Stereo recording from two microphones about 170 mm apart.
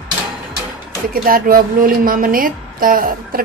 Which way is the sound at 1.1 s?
55° right (ahead or behind).